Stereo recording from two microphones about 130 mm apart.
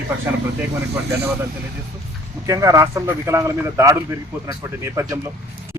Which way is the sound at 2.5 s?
25° right (ahead or behind).